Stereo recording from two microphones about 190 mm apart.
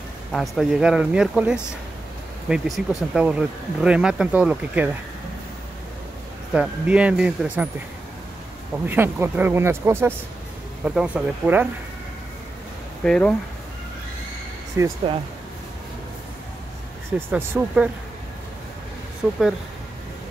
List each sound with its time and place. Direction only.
0.3 s speech: centre (ahead or behind)
6.5 s speech: 5° right (ahead or behind)
8.8 s speech: 10° right (ahead or behind)
13.0 s speech: 5° left (ahead or behind)
14.8 s speech: 15° right (ahead or behind)
17.3 s speech: 10° right (ahead or behind)
19.2 s speech: 5° right (ahead or behind)